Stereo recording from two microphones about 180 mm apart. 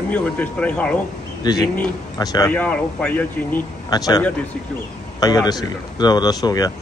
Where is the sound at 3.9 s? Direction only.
20° left (ahead or behind).